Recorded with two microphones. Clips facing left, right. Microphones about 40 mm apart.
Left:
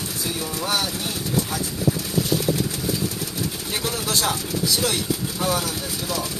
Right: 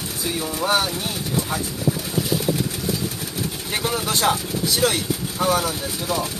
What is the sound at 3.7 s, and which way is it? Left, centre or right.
Speech, centre.